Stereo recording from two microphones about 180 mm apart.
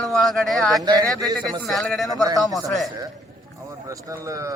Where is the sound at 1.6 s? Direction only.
Centre (ahead or behind).